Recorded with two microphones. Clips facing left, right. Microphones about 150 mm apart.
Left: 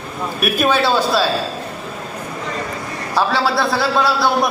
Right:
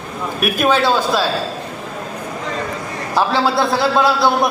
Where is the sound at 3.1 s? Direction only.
15° right (ahead or behind).